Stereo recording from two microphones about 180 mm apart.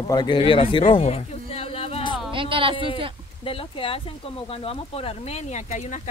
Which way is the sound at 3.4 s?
30° left (ahead or behind).